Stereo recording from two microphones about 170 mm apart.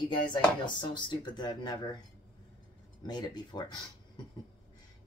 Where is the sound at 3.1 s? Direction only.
25° left (ahead or behind).